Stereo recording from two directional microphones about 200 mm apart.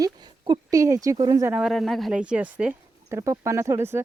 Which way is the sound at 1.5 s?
5° right (ahead or behind).